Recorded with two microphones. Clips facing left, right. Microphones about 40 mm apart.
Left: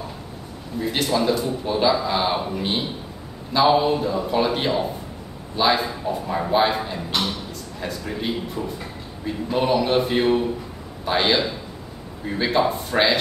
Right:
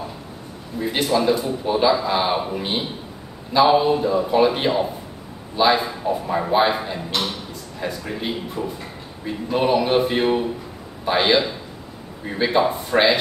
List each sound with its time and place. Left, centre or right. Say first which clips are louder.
0.7 s a man's voice: right 2 dB; centre